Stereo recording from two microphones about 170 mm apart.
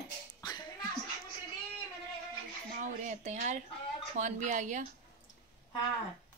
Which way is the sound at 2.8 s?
45° right (ahead or behind).